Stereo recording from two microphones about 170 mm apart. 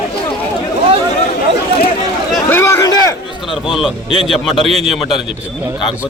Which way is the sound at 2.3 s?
10° left (ahead or behind).